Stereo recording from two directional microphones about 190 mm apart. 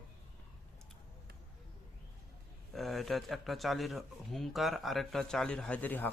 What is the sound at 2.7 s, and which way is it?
Speech, centre (ahead or behind).